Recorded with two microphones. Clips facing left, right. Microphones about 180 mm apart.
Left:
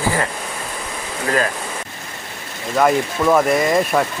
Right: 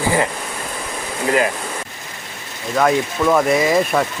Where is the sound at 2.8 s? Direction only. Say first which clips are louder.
Even; 5° left (ahead or behind).